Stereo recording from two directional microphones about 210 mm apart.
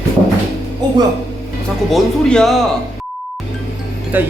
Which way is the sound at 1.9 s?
Centre (ahead or behind).